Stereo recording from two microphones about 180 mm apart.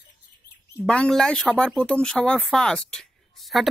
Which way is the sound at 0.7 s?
5° left (ahead or behind).